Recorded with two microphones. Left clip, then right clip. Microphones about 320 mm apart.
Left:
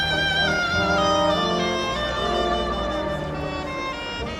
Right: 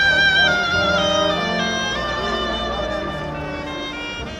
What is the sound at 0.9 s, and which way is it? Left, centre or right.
Bagpipes, centre.